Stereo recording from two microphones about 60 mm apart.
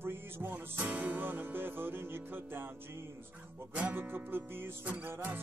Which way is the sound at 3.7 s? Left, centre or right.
Right.